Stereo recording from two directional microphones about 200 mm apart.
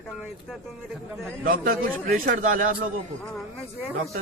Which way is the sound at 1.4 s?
45° right (ahead or behind).